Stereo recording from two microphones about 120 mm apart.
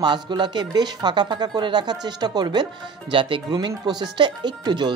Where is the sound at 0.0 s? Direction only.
40° right (ahead or behind).